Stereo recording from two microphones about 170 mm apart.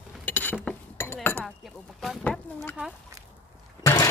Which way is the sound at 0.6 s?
15° left (ahead or behind).